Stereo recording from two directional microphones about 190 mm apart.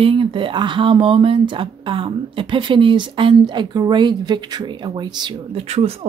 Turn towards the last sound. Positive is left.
turn(degrees=-35)  # may be behind; listen again after turning